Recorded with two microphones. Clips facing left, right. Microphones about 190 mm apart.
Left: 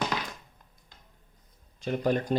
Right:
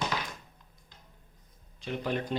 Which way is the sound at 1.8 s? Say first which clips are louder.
Left 5 dB; 45° left (ahead or behind).